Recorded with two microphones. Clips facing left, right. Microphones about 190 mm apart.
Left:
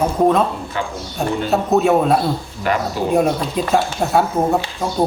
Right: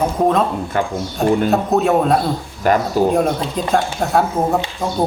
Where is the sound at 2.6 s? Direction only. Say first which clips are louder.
Right 4 dB; 45° right (ahead or behind).